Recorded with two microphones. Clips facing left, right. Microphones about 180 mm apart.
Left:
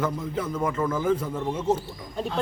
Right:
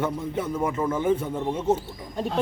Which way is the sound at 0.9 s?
25° right (ahead or behind).